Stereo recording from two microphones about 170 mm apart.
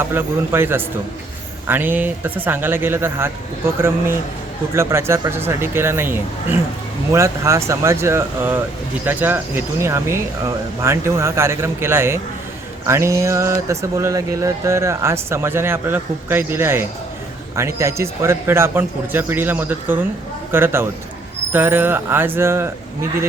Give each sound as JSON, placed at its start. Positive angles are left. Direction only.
{"t": 0.1, "sound": "speech", "side_deg": -15}